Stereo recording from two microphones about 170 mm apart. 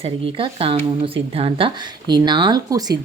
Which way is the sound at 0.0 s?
35° right (ahead or behind).